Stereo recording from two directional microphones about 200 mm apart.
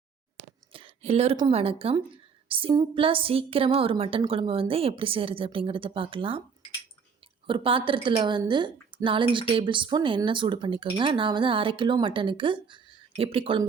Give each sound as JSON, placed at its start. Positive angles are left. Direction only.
{"t": 0.7, "sound": "a sound", "side_deg": -25}
{"t": 1.4, "sound": "a woman's voice", "side_deg": -30}
{"t": 7.4, "sound": "a woman's voice", "side_deg": -25}